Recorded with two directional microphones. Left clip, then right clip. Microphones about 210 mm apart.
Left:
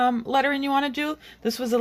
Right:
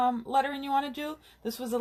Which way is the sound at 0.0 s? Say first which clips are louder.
Left 5 dB; 40° left (ahead or behind).